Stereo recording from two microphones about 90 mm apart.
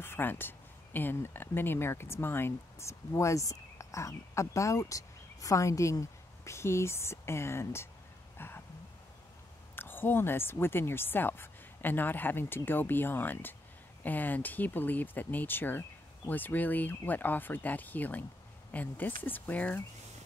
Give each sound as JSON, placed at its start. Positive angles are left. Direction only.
{"t": 0.0, "sound": "speech", "side_deg": 25}
{"t": 8.4, "sound": "a sound", "side_deg": 25}
{"t": 9.8, "sound": "speech", "side_deg": 25}